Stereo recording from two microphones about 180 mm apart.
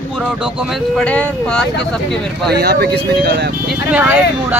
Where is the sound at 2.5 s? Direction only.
65° right (ahead or behind).